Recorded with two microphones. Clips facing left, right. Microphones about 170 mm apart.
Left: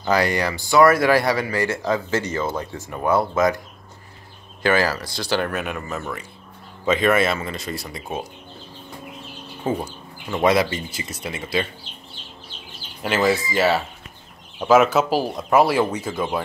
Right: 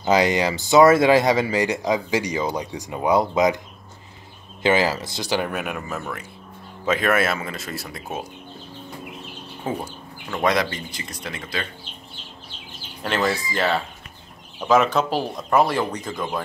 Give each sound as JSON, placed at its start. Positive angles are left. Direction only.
{"t": 0.0, "sound": "speech", "side_deg": -20}
{"t": 4.6, "sound": "speech", "side_deg": -20}
{"t": 9.6, "sound": "speech", "side_deg": 0}
{"t": 13.0, "sound": "speech", "side_deg": 5}